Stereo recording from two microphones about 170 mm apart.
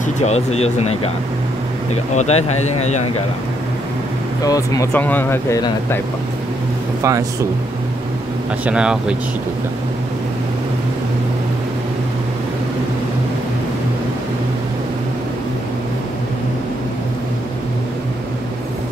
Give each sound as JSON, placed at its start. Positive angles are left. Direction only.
{"t": 0.0, "sound": "speech", "side_deg": 40}
{"t": 2.1, "sound": "speech", "side_deg": 40}
{"t": 4.5, "sound": "speech", "side_deg": 20}
{"t": 7.0, "sound": "speech", "side_deg": -20}
{"t": 8.6, "sound": "speech", "side_deg": -5}